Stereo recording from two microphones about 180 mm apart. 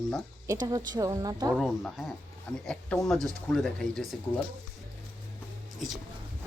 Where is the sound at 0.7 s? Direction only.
20° right (ahead or behind).